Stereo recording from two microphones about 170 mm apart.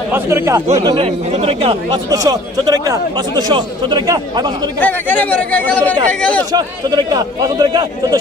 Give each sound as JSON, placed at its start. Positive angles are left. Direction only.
{"t": 0.1, "sound": "speech", "side_deg": -15}
{"t": 0.9, "sound": "speech", "side_deg": -35}
{"t": 2.0, "sound": "speech", "side_deg": -20}
{"t": 4.7, "sound": "speech", "side_deg": 10}
{"t": 6.5, "sound": "speech", "side_deg": -25}